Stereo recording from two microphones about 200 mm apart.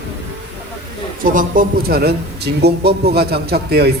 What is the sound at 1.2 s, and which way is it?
Speech, 40° right (ahead or behind).